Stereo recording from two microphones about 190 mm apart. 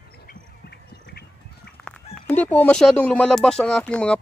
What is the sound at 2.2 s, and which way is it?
Speech, 10° left (ahead or behind).